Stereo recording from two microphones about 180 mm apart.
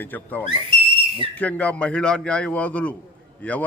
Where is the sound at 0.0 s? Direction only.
10° left (ahead or behind).